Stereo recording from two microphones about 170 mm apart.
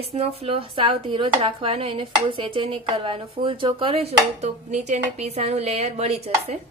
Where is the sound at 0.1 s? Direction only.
35° right (ahead or behind).